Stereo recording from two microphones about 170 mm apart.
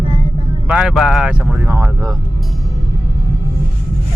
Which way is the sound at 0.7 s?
5° right (ahead or behind).